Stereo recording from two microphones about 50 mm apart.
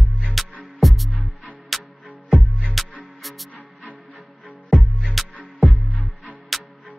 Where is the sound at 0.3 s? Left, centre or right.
Centre.